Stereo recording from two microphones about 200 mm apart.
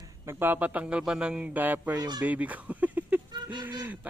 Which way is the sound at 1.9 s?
20° right (ahead or behind).